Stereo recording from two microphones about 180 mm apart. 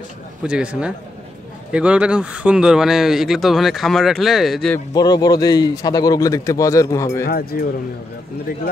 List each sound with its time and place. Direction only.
0.4 s speech: 5° right (ahead or behind)
4.7 s a man's voice: 20° left (ahead or behind)
7.2 s speech: 60° left (ahead or behind)